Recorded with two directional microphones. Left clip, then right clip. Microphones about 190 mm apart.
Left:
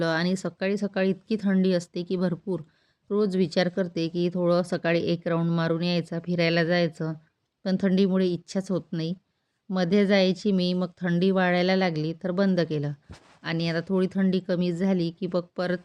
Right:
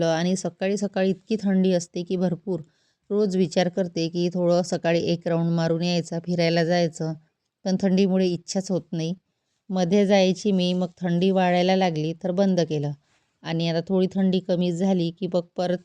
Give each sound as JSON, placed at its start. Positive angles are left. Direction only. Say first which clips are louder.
{"t": 0.0, "sound": "speech", "louder": "right 3 dB", "side_deg": -30}